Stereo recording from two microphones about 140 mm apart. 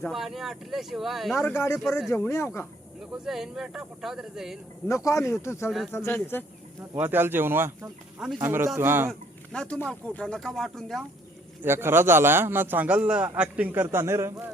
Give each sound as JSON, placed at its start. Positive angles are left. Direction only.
{"t": 0.1, "sound": "speech", "side_deg": 0}
{"t": 1.4, "sound": "speech", "side_deg": 20}
{"t": 3.0, "sound": "speech", "side_deg": -5}
{"t": 4.9, "sound": "speech", "side_deg": 20}
{"t": 6.9, "sound": "a man's voice", "side_deg": -15}
{"t": 9.0, "sound": "speech", "side_deg": 5}
{"t": 11.6, "sound": "a man's voice", "side_deg": -15}